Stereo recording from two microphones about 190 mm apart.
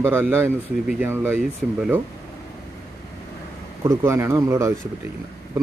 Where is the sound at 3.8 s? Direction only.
15° right (ahead or behind).